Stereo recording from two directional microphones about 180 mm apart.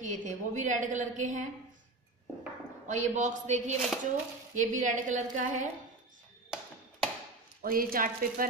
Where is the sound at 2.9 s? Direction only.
40° right (ahead or behind).